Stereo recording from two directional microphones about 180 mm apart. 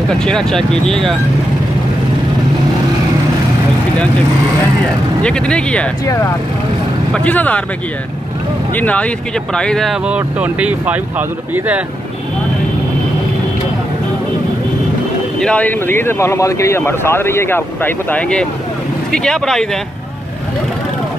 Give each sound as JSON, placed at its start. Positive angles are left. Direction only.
{"t": 0.1, "sound": "speech", "side_deg": 5}
{"t": 5.2, "sound": "speech", "side_deg": 5}
{"t": 6.0, "sound": "speech", "side_deg": 15}
{"t": 8.7, "sound": "speech", "side_deg": 10}
{"t": 15.4, "sound": "speech", "side_deg": 10}